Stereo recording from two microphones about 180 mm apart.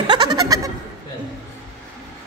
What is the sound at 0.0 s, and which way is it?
Goat, 25° right (ahead or behind).